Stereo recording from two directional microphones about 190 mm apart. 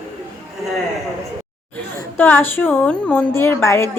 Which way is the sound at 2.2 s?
10° left (ahead or behind).